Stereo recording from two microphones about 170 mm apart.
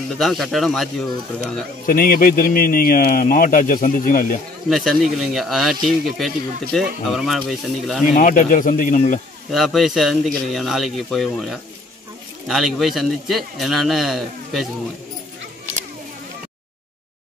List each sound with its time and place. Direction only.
0.2 s a man's voice: centre (ahead or behind)
1.9 s speech: 60° left (ahead or behind)
4.6 s a man's voice: centre (ahead or behind)
8.1 s speech: 50° left (ahead or behind)
9.5 s a man's voice: centre (ahead or behind)